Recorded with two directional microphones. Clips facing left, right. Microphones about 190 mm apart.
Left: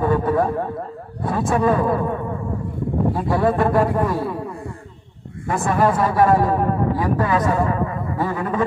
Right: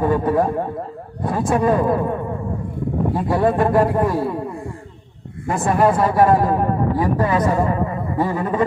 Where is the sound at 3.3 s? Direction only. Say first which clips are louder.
Right 2 dB; 20° right (ahead or behind).